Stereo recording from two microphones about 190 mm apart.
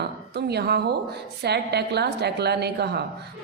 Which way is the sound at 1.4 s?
60° right (ahead or behind).